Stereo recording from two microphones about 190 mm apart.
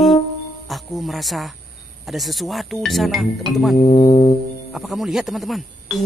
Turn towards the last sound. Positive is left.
turn(degrees=0)  # may be behind; listen again after turning